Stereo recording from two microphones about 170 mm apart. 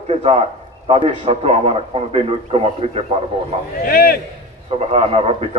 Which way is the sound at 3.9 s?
60° left (ahead or behind).